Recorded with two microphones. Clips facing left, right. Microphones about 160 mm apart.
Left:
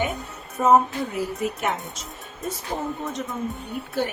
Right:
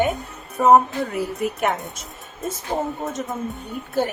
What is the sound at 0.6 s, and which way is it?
Speech, 65° right (ahead or behind).